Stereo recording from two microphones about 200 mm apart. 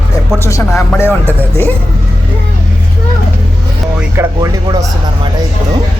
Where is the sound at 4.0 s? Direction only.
15° right (ahead or behind).